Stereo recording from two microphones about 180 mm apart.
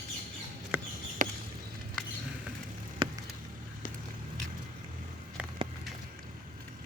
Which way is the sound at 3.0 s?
30° right (ahead or behind).